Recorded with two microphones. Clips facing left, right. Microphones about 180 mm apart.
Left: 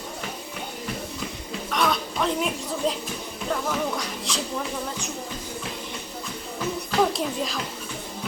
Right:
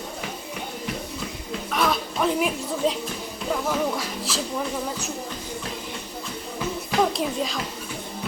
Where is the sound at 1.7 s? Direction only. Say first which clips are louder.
Even; 5° right (ahead or behind).